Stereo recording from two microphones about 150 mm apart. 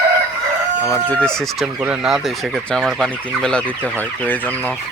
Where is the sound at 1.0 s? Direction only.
5° left (ahead or behind).